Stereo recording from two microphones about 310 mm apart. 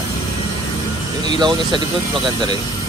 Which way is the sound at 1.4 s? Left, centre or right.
Centre.